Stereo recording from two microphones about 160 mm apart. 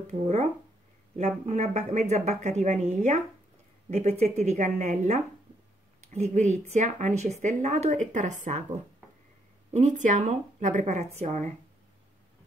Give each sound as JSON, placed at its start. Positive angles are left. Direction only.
{"t": 0.0, "sound": "a woman's voice", "side_deg": -45}
{"t": 4.2, "sound": "a woman's voice", "side_deg": -45}